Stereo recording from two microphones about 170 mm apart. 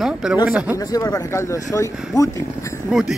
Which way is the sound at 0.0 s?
5° right (ahead or behind).